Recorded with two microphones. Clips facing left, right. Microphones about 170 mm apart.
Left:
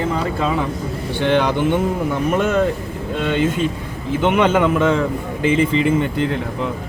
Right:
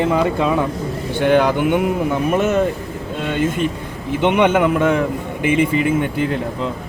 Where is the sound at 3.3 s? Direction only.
60° right (ahead or behind).